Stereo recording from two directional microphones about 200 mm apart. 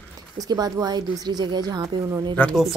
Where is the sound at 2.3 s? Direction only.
5° left (ahead or behind).